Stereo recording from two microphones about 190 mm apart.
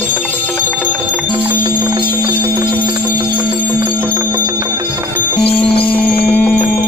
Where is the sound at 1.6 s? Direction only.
20° right (ahead or behind).